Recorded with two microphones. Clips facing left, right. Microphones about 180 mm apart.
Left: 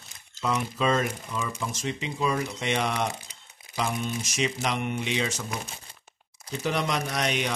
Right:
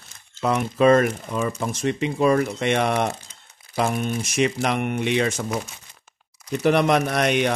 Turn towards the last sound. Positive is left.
turn(degrees=-60)  # may be behind; listen again after turning